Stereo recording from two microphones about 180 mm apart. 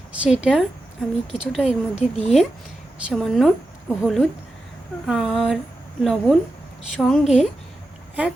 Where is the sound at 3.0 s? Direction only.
Centre (ahead or behind).